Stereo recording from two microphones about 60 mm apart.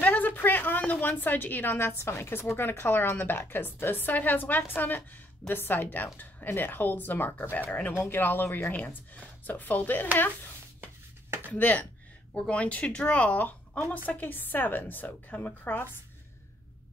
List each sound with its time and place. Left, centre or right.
0.0 s a sound: left
1.9 s a woman's voice: left
10.8 s chopping: right
11.5 s a woman's voice: left